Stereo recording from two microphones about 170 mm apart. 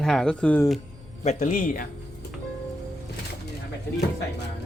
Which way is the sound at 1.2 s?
45° left (ahead or behind).